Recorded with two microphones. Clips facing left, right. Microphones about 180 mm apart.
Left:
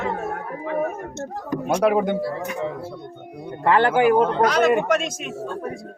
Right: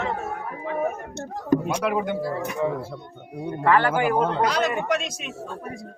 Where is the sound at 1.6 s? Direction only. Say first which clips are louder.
Left 5 dB; 45° left (ahead or behind).